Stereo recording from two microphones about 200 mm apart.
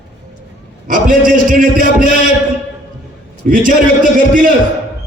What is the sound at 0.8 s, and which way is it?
A man's voice, 45° right (ahead or behind).